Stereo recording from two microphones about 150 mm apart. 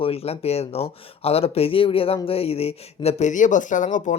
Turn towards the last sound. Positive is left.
turn(degrees=55)  # may be behind; listen again after turning